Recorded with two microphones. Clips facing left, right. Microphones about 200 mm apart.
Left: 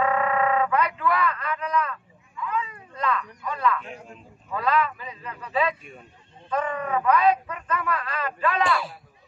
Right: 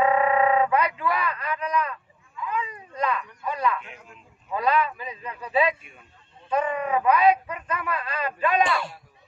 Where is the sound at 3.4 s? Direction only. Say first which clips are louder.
Even; 15° right (ahead or behind).